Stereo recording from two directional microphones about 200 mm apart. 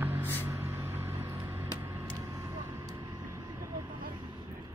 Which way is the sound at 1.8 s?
15° right (ahead or behind).